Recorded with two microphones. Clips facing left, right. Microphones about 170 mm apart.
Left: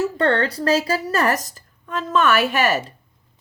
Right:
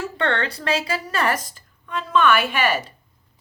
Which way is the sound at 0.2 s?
35° left (ahead or behind).